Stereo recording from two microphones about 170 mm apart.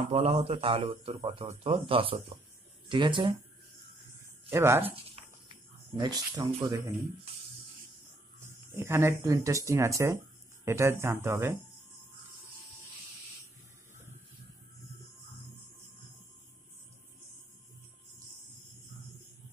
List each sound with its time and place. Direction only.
0.1 s a man's voice: 35° right (ahead or behind)
4.5 s speech: 15° right (ahead or behind)
4.8 s a sound: 35° right (ahead or behind)
5.9 s speech: 20° right (ahead or behind)
8.4 s speech: 15° right (ahead or behind)